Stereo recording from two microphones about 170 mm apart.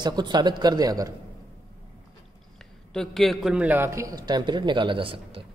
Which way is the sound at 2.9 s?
Centre (ahead or behind).